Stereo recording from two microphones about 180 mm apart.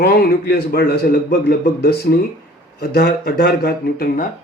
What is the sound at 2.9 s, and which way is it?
Speech, 65° left (ahead or behind).